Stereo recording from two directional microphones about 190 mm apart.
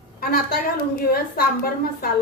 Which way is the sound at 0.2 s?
55° left (ahead or behind).